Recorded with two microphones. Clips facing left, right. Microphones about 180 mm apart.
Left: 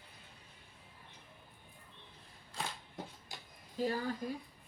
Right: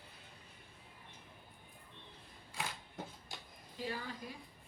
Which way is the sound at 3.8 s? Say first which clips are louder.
Left 7 dB; 45° left (ahead or behind).